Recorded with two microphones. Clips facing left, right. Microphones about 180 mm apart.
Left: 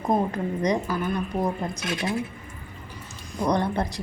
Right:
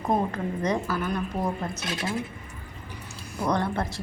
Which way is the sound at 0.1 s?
15° left (ahead or behind).